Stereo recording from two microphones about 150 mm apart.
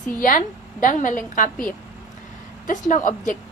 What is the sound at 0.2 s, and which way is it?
Speech, 65° left (ahead or behind).